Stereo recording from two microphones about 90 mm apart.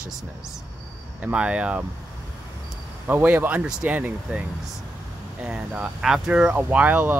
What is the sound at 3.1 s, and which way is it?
Speech, 20° right (ahead or behind).